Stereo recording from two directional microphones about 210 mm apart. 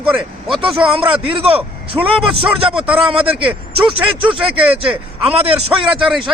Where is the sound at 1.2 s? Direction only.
25° right (ahead or behind).